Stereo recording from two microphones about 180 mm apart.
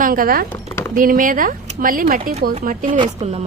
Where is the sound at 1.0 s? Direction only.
50° right (ahead or behind).